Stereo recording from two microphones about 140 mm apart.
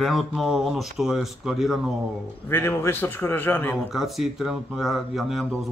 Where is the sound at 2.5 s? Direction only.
15° left (ahead or behind).